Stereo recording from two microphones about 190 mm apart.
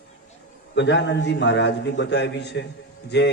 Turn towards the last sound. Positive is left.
turn(degrees=60)  # may be behind; listen again after turning